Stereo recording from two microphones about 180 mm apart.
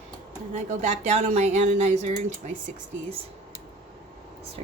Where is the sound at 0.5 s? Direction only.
40° right (ahead or behind).